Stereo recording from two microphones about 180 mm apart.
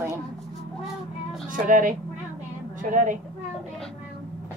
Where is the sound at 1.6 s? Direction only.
50° right (ahead or behind).